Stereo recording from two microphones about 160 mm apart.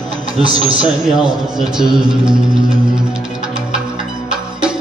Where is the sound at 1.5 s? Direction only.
5° right (ahead or behind).